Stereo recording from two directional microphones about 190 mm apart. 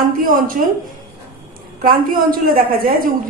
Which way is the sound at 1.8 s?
50° right (ahead or behind).